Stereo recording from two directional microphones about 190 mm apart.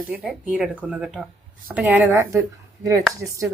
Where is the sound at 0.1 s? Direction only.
5° right (ahead or behind).